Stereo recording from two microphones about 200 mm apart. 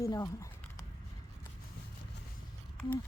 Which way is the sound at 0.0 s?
15° left (ahead or behind).